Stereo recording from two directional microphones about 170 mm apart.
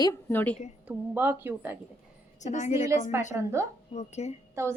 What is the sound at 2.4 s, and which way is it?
Speech, 45° left (ahead or behind).